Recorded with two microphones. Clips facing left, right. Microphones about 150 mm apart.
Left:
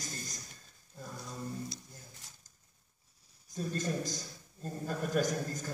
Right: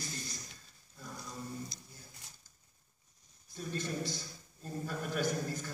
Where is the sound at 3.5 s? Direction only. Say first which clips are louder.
Left 3 dB; 45° left (ahead or behind).